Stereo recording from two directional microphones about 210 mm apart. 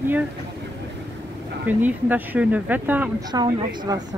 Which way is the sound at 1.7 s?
10° right (ahead or behind).